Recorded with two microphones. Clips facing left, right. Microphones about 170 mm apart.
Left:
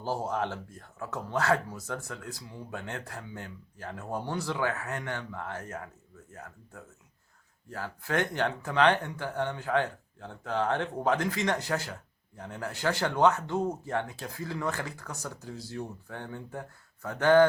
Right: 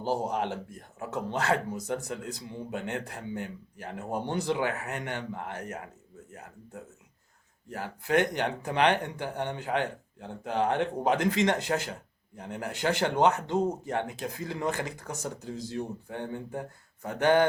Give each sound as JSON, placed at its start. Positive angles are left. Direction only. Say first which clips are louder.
{"t": 0.0, "sound": "speech", "louder": "right 2 dB", "side_deg": -20}
{"t": 7.7, "sound": "speech", "louder": "right 4 dB", "side_deg": -20}